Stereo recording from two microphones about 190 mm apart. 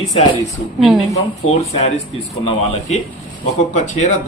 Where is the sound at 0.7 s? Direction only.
Centre (ahead or behind).